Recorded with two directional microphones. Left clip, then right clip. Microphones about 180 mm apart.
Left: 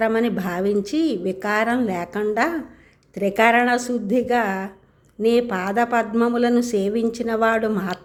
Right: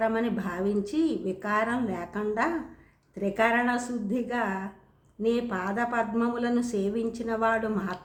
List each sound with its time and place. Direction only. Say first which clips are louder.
0.0 s speech: left 7 dB; 30° left (ahead or behind)